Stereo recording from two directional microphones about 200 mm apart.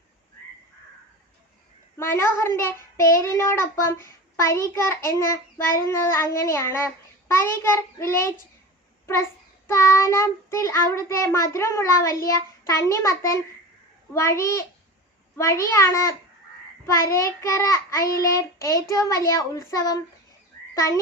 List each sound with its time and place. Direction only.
2.0 s a child's voice: 10° left (ahead or behind)
9.6 s a child's voice: 15° left (ahead or behind)